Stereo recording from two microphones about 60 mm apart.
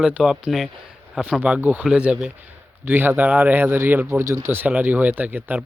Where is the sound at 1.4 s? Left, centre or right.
Right.